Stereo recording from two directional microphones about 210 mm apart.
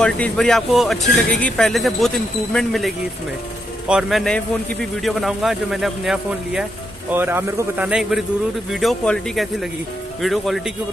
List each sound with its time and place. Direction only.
0.0 s speech: 5° left (ahead or behind)